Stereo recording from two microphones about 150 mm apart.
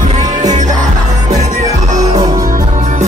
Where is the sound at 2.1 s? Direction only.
25° right (ahead or behind).